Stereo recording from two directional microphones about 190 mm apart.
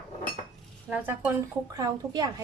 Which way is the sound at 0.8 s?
10° right (ahead or behind).